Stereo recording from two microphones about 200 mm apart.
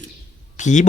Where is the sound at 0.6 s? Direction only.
35° left (ahead or behind).